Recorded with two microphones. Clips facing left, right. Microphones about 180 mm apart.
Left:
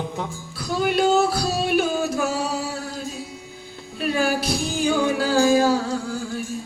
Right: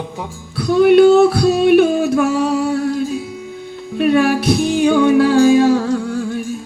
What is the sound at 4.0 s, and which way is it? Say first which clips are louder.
Music: right 9 dB; 60° right (ahead or behind).